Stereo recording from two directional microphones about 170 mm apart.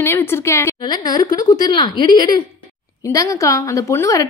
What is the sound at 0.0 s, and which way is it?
A woman's voice, 15° left (ahead or behind).